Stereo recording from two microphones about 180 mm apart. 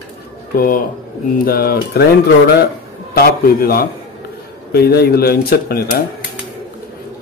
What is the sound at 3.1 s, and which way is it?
Speech, 55° left (ahead or behind).